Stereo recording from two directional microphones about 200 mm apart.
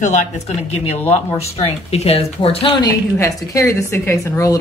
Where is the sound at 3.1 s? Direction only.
15° left (ahead or behind).